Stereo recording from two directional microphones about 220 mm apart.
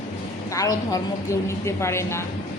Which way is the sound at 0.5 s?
15° left (ahead or behind).